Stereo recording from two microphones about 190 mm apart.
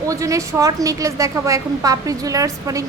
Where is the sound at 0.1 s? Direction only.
15° right (ahead or behind).